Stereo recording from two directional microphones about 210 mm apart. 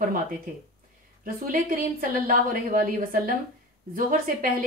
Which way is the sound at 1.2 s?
40° right (ahead or behind).